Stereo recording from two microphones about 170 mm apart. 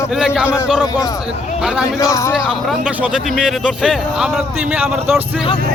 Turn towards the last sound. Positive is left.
turn(degrees=-5)  # may be behind; listen again after turning